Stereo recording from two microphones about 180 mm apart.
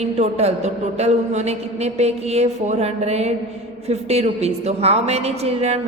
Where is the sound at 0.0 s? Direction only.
35° right (ahead or behind).